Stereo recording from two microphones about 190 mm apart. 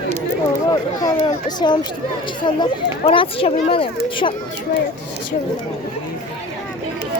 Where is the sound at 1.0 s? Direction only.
20° left (ahead or behind).